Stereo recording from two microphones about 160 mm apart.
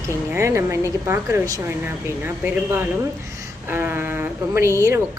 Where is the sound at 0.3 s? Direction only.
15° right (ahead or behind).